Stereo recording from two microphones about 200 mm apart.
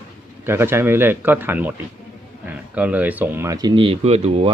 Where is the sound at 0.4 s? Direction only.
10° right (ahead or behind).